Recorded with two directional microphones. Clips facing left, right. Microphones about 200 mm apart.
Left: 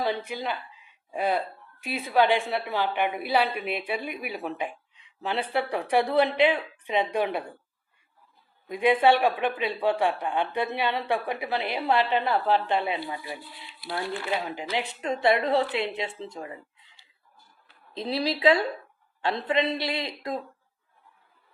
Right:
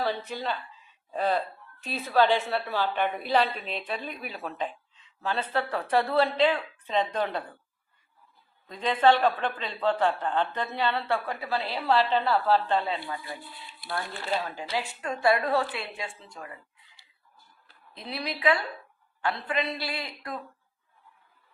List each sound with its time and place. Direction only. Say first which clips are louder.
0.3 s speech: left 1 dB; 15° left (ahead or behind)
8.6 s a woman's voice: left 2 dB; 10° left (ahead or behind)
17.9 s a woman's voice: left 7 dB; 30° left (ahead or behind)